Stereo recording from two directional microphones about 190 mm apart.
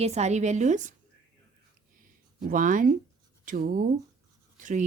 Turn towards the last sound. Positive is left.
turn(degrees=-45)  # may be behind; listen again after turning